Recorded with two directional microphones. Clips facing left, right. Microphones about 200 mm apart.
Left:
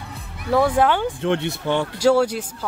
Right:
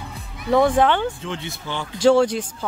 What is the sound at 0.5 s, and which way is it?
Speech, 5° left (ahead or behind).